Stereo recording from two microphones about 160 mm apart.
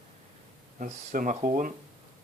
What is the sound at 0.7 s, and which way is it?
Speech, 55° right (ahead or behind).